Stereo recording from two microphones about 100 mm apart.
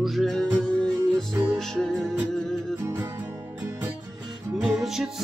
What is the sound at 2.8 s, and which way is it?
Music, 25° right (ahead or behind).